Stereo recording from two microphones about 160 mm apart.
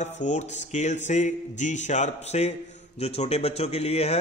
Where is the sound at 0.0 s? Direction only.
50° left (ahead or behind).